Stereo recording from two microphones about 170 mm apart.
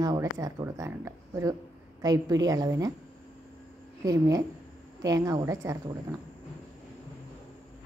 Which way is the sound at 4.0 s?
20° right (ahead or behind).